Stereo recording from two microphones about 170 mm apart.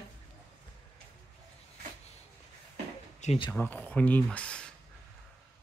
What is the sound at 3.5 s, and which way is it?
Speech, 10° left (ahead or behind).